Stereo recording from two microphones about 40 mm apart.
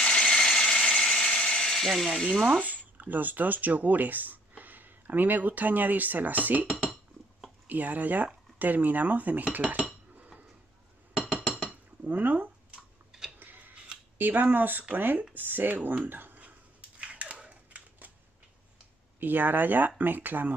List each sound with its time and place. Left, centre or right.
0.0 s ratchet: centre
2.1 s frying: centre
2.6 s speech: right
7.6 s cutlery: right
11.1 s chink: centre
11.7 s dishes: right
13.4 s scissors: right
14.1 s cutlery: right
16.1 s speech: right
17.0 s crushing: right
17.5 s typewriter: right
19.1 s cutlery: right